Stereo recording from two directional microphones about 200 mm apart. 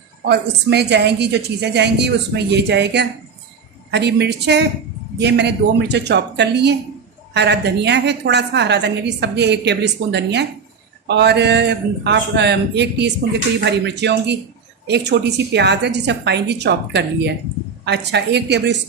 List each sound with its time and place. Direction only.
0.3 s a woman's voice: 55° right (ahead or behind)